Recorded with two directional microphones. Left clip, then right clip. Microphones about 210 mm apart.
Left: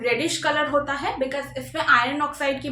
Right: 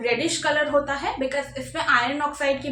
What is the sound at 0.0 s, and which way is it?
A woman's voice, 10° left (ahead or behind).